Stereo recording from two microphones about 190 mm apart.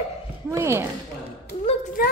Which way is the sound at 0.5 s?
15° right (ahead or behind).